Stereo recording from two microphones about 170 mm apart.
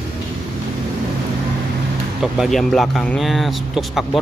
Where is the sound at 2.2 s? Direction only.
Centre (ahead or behind).